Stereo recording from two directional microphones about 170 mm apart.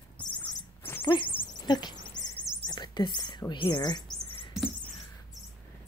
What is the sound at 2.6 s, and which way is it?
Rodents, 25° left (ahead or behind).